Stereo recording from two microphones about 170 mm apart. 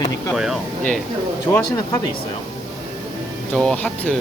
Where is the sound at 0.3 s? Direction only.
Centre (ahead or behind).